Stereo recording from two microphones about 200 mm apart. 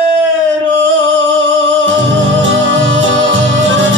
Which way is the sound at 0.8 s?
65° right (ahead or behind).